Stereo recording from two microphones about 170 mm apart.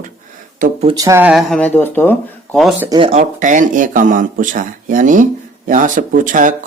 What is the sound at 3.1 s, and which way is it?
Speech, 45° right (ahead or behind).